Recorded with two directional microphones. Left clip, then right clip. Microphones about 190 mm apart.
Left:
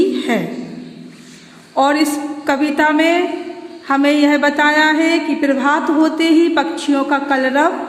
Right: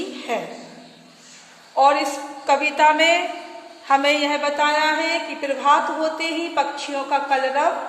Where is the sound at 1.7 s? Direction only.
30° left (ahead or behind).